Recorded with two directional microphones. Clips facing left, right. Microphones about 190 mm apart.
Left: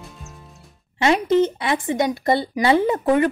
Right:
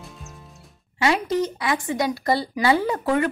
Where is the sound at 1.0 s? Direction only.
25° left (ahead or behind).